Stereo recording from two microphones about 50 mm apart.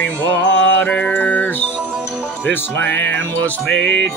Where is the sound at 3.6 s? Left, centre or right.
Centre.